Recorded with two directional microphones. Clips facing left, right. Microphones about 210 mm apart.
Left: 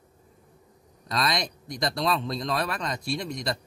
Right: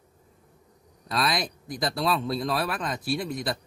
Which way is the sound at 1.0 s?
5° right (ahead or behind).